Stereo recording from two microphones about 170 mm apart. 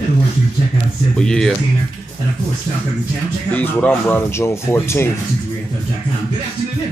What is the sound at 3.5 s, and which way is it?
Speech, 10° left (ahead or behind).